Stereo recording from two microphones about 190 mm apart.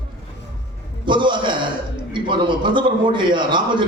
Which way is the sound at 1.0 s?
25° right (ahead or behind).